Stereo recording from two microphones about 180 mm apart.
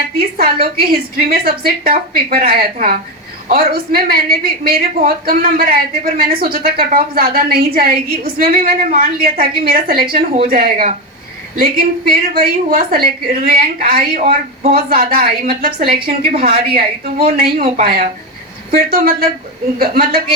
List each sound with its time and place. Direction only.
0.2 s a woman's voice: 55° right (ahead or behind)